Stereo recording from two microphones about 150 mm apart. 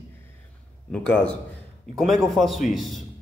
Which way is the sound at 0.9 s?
5° left (ahead or behind).